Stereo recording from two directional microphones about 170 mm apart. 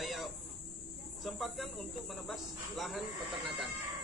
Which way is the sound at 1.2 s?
Centre (ahead or behind).